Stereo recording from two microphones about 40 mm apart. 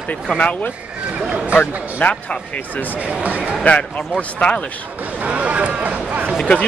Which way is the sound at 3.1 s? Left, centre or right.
Right.